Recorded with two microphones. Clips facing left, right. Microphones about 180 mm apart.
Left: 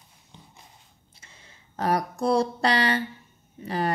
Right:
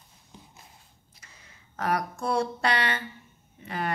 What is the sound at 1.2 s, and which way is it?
Speech, 30° left (ahead or behind).